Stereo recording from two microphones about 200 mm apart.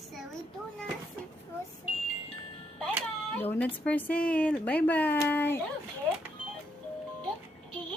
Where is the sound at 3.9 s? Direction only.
5° left (ahead or behind).